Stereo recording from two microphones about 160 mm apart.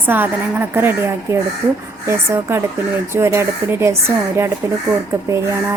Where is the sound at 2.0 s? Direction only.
15° right (ahead or behind).